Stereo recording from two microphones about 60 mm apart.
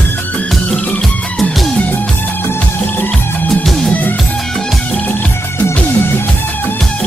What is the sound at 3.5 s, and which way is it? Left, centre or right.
Music, centre.